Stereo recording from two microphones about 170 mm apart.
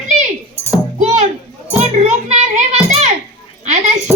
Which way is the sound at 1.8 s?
40° right (ahead or behind).